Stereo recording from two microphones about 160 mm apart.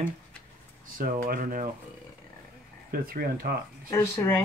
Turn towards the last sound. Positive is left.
turn(degrees=15)  # may be behind; listen again after turning